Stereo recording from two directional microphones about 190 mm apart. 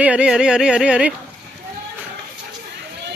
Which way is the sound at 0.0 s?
5° right (ahead or behind).